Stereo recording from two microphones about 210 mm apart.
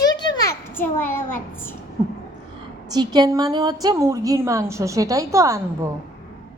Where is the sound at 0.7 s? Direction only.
10° left (ahead or behind).